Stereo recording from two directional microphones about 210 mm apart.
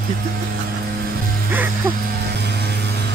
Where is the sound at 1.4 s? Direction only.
10° right (ahead or behind).